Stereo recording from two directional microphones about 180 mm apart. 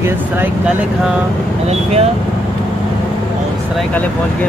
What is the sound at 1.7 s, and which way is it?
Speech, 35° right (ahead or behind).